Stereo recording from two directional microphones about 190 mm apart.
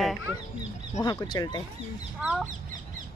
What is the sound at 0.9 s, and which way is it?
Speech, 20° left (ahead or behind).